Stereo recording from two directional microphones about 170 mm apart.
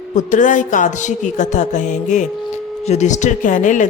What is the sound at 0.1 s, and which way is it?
A woman's voice, 45° left (ahead or behind).